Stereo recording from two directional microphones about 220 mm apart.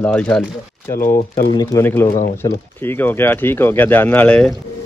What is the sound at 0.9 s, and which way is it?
Speech, 40° left (ahead or behind).